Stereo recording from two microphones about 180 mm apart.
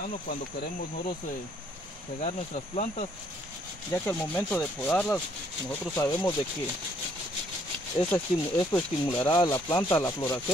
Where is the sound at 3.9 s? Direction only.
10° left (ahead or behind).